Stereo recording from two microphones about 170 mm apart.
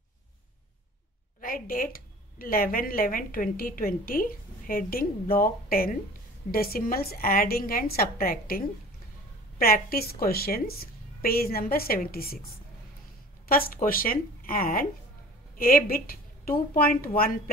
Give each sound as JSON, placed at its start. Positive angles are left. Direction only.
{"t": 1.4, "sound": "a woman's voice", "side_deg": 55}
{"t": 13.5, "sound": "a woman's voice", "side_deg": 60}